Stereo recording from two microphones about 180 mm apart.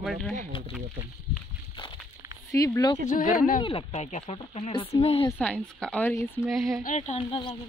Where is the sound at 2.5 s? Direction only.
20° left (ahead or behind).